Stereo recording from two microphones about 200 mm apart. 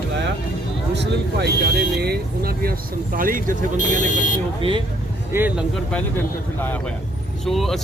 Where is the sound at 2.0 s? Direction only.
50° right (ahead or behind).